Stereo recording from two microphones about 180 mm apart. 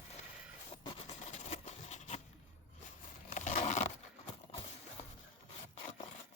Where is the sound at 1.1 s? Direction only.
40° left (ahead or behind).